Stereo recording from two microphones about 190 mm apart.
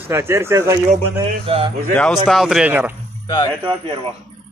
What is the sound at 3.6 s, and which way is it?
Speech, 30° right (ahead or behind).